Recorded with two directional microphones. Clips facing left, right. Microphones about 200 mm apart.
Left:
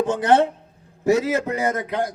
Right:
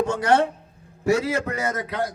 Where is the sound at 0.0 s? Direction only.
20° left (ahead or behind).